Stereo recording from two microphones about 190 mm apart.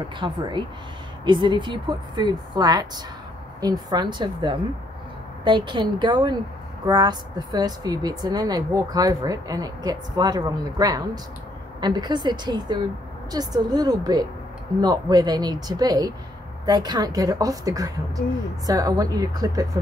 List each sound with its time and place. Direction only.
0.2 s speech: 25° right (ahead or behind)